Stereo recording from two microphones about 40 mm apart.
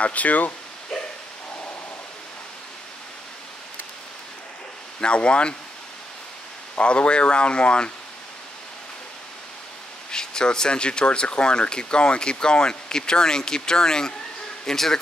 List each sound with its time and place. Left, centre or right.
0.0 s speech: left
5.0 s speech: left
6.8 s speech: left
10.1 s a man's voice: centre